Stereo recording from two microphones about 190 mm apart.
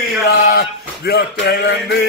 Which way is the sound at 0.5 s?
55° left (ahead or behind).